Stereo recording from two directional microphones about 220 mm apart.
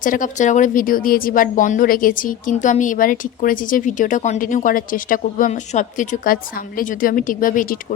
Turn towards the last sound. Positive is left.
turn(degrees=40)  # may be behind; listen again after turning